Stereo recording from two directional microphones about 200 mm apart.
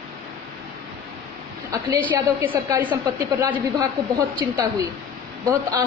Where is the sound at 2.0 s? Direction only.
10° right (ahead or behind).